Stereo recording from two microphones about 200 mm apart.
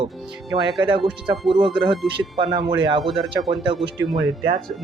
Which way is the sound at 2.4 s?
20° right (ahead or behind).